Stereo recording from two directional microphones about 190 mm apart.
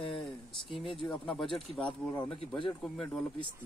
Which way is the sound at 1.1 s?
Centre (ahead or behind).